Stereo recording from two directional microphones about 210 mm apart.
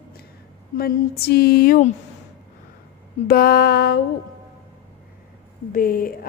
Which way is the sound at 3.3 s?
50° left (ahead or behind).